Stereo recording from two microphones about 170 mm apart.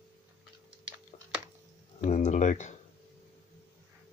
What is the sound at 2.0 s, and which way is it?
Speech, 45° left (ahead or behind).